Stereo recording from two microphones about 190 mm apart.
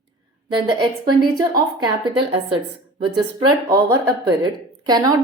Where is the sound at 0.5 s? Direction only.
25° right (ahead or behind).